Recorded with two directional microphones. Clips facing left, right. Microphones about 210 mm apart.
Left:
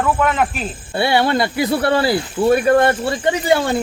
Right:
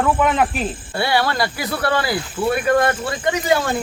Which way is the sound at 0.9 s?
25° left (ahead or behind).